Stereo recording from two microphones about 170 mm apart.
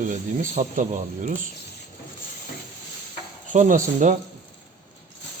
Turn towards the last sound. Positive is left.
turn(degrees=-45)  # may be behind; listen again after turning